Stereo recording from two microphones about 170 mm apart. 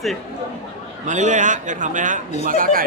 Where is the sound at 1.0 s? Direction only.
45° right (ahead or behind).